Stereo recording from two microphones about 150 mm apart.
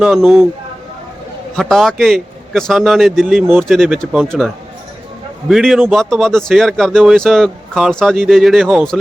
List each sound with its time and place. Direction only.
0.0 s speech: centre (ahead or behind)
1.5 s speech: centre (ahead or behind)